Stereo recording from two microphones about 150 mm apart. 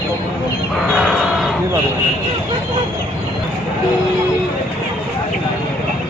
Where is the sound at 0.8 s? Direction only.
Centre (ahead or behind).